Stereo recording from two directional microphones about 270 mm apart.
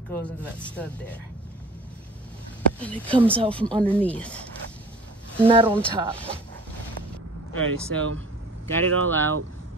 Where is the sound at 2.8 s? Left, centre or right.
Centre.